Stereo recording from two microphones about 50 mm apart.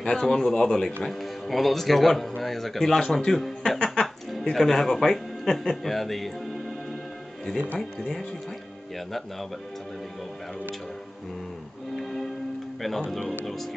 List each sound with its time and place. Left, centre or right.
0.0 s speech: centre
3.8 s music: centre
4.3 s speech: centre
8.0 s speech: centre
12.0 s music: centre
12.8 s speech: centre